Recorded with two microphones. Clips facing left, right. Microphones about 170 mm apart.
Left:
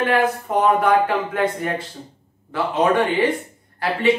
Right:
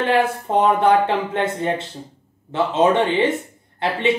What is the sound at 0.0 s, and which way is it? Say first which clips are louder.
Speech: even; 25° right (ahead or behind).